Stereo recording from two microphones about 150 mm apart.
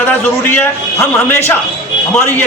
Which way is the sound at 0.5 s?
15° left (ahead or behind).